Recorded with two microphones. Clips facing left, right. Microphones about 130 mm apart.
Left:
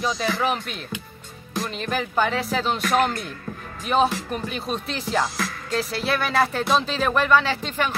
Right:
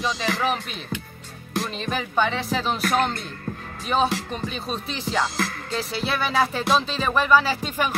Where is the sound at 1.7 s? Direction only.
Centre (ahead or behind).